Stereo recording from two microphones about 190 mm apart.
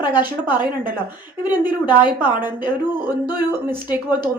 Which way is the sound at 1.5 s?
10° right (ahead or behind).